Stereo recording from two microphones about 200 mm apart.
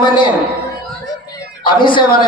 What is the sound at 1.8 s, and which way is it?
Speech, 25° left (ahead or behind).